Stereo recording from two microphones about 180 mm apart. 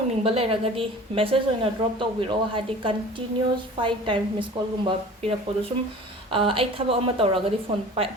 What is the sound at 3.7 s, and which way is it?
Speech, 30° right (ahead or behind).